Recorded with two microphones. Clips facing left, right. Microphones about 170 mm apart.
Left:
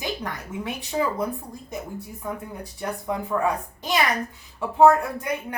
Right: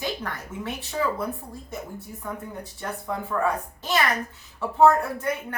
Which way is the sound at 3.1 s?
15° left (ahead or behind).